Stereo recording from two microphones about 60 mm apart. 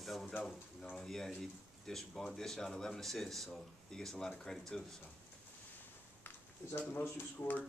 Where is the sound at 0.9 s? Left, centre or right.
Centre.